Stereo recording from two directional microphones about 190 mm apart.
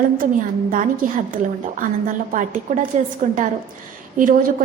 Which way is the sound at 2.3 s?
45° right (ahead or behind).